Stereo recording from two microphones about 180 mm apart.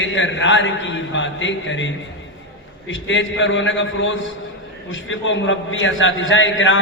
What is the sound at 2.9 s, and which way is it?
A man's voice, 90° left.